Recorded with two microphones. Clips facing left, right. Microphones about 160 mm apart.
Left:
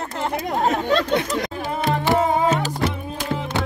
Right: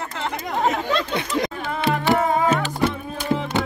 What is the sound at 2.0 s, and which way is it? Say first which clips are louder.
Music: left 1 dB; 20° left (ahead or behind).